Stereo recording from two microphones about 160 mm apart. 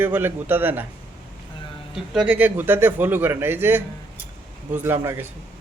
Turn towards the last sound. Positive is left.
turn(degrees=-15)  # may be behind; listen again after turning